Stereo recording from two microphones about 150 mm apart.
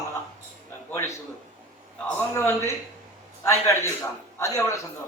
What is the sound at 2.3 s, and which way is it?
A man's voice, 15° left (ahead or behind).